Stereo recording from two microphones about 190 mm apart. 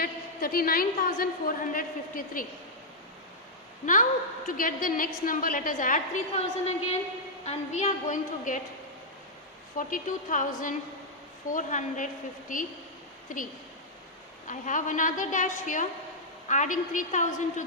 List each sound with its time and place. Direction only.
0.0 s a woman's voice: 50° left (ahead or behind)
4.4 s a woman's voice: 45° left (ahead or behind)
9.7 s a woman's voice: 45° left (ahead or behind)